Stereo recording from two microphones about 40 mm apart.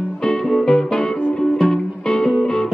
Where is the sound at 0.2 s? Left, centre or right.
Centre.